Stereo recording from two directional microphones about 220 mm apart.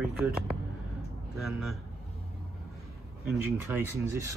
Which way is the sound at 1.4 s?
Centre (ahead or behind).